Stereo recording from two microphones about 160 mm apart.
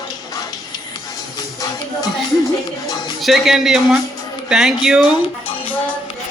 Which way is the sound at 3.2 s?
Centre (ahead or behind).